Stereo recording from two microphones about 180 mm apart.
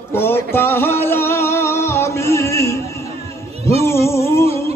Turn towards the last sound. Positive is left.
turn(degrees=15)  # may be behind; listen again after turning